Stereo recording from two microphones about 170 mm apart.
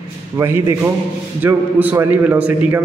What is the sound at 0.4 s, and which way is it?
A man's voice, 15° right (ahead or behind).